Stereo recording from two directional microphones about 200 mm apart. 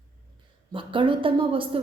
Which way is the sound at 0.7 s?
25° right (ahead or behind).